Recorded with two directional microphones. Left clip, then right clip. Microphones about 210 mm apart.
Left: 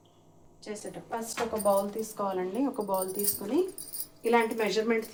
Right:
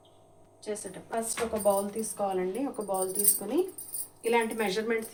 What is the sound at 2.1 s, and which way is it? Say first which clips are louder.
Speech: right 4 dB; 20° left (ahead or behind).